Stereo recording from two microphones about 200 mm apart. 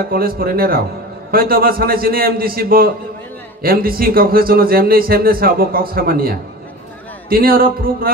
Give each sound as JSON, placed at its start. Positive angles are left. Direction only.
{"t": 0.0, "sound": "a man's voice", "side_deg": -50}